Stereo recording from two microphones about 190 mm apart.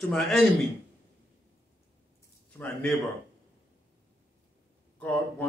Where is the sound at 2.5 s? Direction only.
10° left (ahead or behind).